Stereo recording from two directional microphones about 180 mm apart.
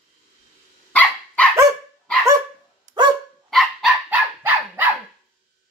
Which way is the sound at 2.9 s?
45° right (ahead or behind).